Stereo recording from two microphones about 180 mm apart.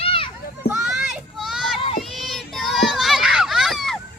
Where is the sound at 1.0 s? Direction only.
Centre (ahead or behind).